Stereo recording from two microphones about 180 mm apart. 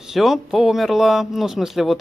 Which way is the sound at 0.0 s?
Centre (ahead or behind).